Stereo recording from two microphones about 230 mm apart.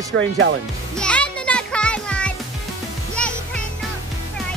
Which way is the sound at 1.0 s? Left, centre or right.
Centre.